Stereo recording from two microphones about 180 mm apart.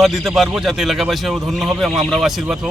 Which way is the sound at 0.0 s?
Centre (ahead or behind).